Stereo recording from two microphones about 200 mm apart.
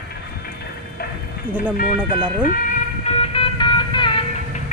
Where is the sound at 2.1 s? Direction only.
25° right (ahead or behind).